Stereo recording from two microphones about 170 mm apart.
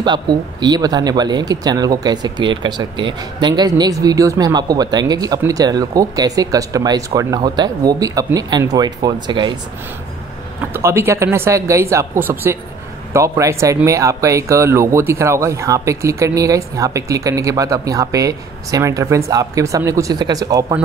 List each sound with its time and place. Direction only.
0.0 s speech: 25° right (ahead or behind)
10.7 s speech: 15° right (ahead or behind)